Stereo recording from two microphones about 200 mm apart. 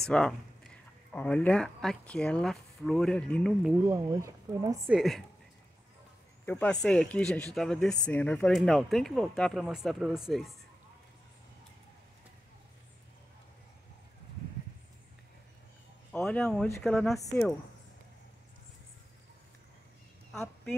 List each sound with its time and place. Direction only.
0.0 s speech: 5° left (ahead or behind)
3.8 s speech: 20° right (ahead or behind)
4.9 s speech: centre (ahead or behind)
6.4 s speech: 10° left (ahead or behind)
16.1 s speech: 5° left (ahead or behind)
17.2 s speech: 15° left (ahead or behind)